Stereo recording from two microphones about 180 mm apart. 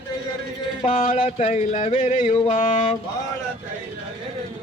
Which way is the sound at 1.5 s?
40° left (ahead or behind).